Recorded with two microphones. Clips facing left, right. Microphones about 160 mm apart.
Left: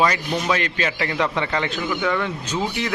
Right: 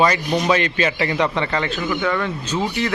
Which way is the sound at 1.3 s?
10° left (ahead or behind).